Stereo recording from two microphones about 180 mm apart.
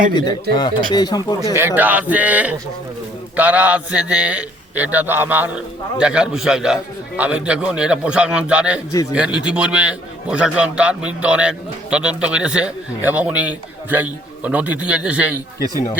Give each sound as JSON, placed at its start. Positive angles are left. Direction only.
{"t": 0.5, "sound": "speech", "side_deg": 25}
{"t": 1.5, "sound": "a man's voice", "side_deg": -10}